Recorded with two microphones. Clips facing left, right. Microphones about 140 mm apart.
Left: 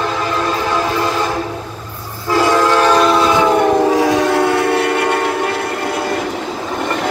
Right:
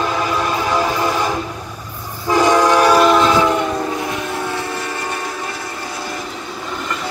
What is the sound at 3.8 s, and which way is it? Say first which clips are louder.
Train: left 10 dB; 90° left.